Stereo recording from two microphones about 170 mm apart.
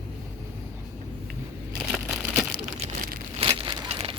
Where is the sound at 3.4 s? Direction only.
30° right (ahead or behind).